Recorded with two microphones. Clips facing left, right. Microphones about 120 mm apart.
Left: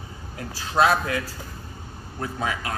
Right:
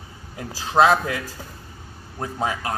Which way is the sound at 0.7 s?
25° right (ahead or behind).